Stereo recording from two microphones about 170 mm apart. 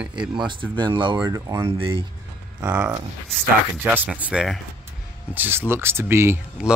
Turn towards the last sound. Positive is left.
turn(degrees=-5)  # may be behind; listen again after turning